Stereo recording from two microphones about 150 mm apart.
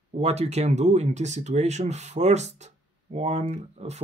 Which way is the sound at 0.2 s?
45° right (ahead or behind).